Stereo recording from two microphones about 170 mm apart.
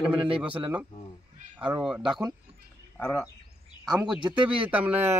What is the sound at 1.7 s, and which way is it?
Speech, 5° right (ahead or behind).